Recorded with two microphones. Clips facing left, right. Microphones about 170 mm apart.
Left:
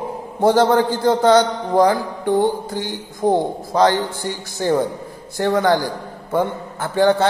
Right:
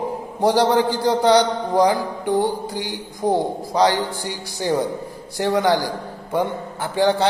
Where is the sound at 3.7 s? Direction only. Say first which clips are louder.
Left 2 dB; 15° right (ahead or behind).